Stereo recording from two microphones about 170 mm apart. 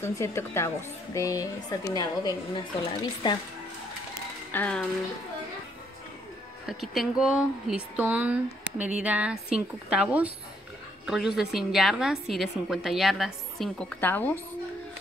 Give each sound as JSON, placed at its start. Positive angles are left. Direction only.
{"t": 0.0, "sound": "a woman's voice", "side_deg": 15}
{"t": 4.5, "sound": "speech", "side_deg": 10}
{"t": 6.6, "sound": "speech", "side_deg": 0}